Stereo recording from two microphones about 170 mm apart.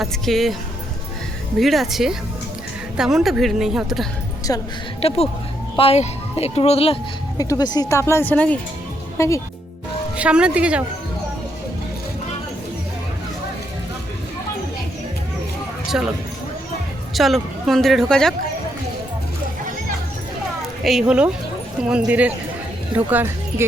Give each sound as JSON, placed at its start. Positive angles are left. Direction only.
{"t": 0.0, "sound": "speech", "side_deg": 0}
{"t": 1.5, "sound": "speech", "side_deg": 0}
{"t": 4.5, "sound": "speech", "side_deg": 20}
{"t": 4.9, "sound": "speech", "side_deg": 35}
{"t": 7.3, "sound": "speech", "side_deg": 20}
{"t": 10.2, "sound": "speech", "side_deg": -5}
{"t": 15.9, "sound": "speech", "side_deg": -5}
{"t": 17.2, "sound": "speech", "side_deg": 0}
{"t": 20.8, "sound": "speech", "side_deg": -5}